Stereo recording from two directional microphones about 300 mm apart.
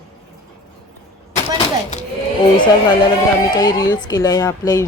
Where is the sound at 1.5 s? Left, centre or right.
Left.